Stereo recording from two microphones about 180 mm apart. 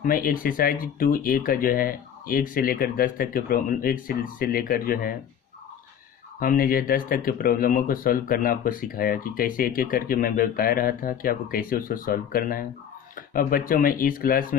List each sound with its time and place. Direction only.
0.0 s speech: 50° left (ahead or behind)
6.4 s speech: 50° left (ahead or behind)